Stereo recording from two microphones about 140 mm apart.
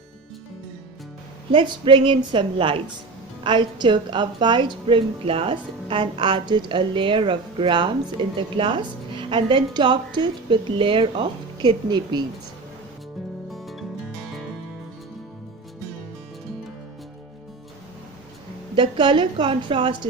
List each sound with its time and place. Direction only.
1.5 s a woman's voice: 35° right (ahead or behind)
13.5 s music: centre (ahead or behind)
18.8 s a woman's voice: 35° right (ahead or behind)